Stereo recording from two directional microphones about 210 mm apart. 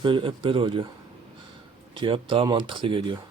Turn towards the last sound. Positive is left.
turn(degrees=-25)  # may be behind; listen again after turning